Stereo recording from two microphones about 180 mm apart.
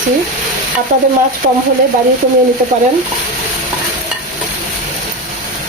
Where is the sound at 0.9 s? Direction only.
45° right (ahead or behind).